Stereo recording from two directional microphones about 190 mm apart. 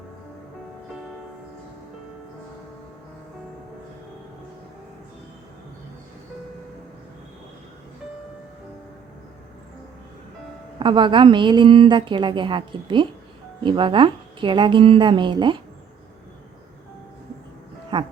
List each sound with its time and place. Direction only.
10.8 s a woman's voice: 25° right (ahead or behind)
17.9 s music: 25° right (ahead or behind)